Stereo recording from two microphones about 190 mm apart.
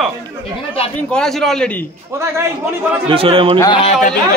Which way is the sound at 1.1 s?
Centre (ahead or behind).